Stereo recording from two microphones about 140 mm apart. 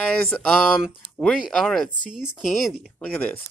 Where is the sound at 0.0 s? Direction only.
5° left (ahead or behind).